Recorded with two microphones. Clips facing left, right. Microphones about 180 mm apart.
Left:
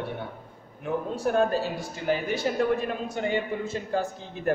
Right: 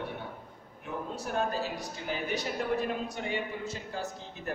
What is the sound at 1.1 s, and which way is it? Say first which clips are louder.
A woman's voice: left 8 dB; 75° left (ahead or behind).